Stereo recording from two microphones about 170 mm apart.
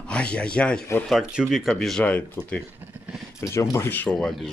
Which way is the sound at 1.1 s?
5° right (ahead or behind).